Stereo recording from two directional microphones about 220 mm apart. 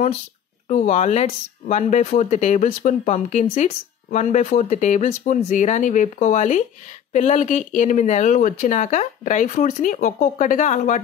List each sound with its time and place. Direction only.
0.7 s speech: 30° left (ahead or behind)